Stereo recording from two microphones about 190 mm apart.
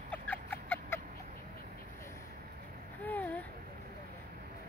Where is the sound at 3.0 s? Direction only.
10° left (ahead or behind).